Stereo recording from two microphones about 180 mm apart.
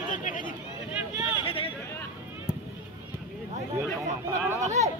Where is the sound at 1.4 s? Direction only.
30° left (ahead or behind).